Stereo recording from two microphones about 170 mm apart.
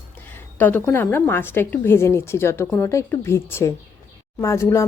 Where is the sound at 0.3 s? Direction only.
10° left (ahead or behind).